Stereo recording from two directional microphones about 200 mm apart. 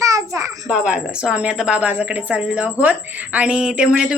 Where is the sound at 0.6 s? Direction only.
5° right (ahead or behind).